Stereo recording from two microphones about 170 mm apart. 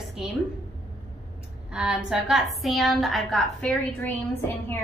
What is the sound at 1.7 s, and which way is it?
A woman's voice, 5° right (ahead or behind).